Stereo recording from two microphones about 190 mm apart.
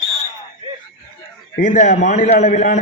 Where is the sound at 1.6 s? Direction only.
40° left (ahead or behind).